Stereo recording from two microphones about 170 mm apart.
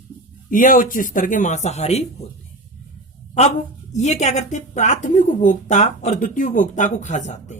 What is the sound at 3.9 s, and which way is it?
Speech, 40° left (ahead or behind).